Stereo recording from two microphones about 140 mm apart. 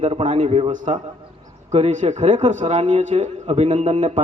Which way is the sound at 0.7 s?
65° right (ahead or behind).